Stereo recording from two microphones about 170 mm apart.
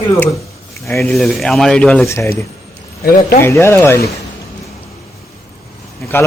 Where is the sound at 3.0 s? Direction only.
60° left (ahead or behind).